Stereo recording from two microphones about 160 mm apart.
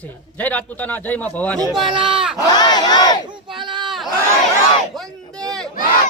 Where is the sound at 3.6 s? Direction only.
30° right (ahead or behind).